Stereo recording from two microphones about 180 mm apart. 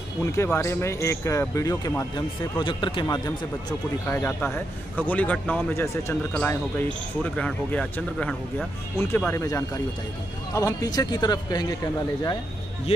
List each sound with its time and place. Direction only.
0.2 s speech: 15° left (ahead or behind)
2.6 s a man's voice: 25° left (ahead or behind)
4.1 s a man's voice: 10° left (ahead or behind)